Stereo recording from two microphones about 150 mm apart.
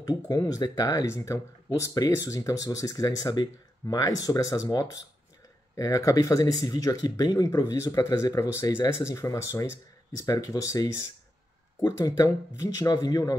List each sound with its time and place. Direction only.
0.3 s speech: 25° left (ahead or behind)
5.8 s speech: 20° left (ahead or behind)